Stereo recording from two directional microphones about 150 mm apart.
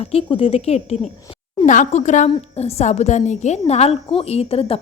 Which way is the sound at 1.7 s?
55° left (ahead or behind).